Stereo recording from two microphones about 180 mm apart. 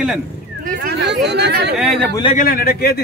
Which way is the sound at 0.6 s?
65° right (ahead or behind).